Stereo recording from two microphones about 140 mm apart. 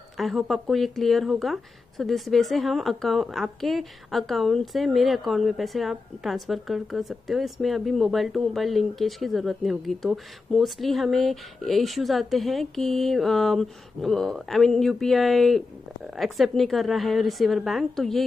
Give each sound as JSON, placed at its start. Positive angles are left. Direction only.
{"t": 0.2, "sound": "speech", "side_deg": 0}